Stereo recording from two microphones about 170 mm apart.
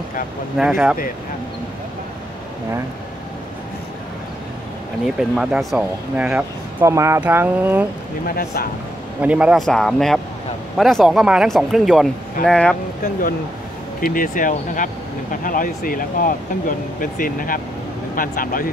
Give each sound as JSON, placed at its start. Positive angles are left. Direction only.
{"t": 0.6, "sound": "speech", "side_deg": -5}
{"t": 5.0, "sound": "speech", "side_deg": -5}
{"t": 8.3, "sound": "speech", "side_deg": 60}
{"t": 9.2, "sound": "speech", "side_deg": -5}
{"t": 14.0, "sound": "speech", "side_deg": 55}